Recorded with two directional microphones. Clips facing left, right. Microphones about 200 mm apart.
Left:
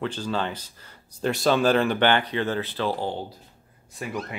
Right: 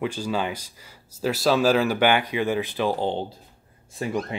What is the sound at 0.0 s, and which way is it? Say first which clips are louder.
Speech: right 2 dB; 10° right (ahead or behind).